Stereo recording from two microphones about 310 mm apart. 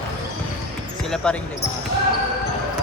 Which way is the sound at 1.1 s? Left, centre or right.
Centre.